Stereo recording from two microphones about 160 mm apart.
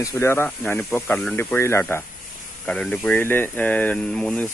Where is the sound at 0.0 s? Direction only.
20° left (ahead or behind).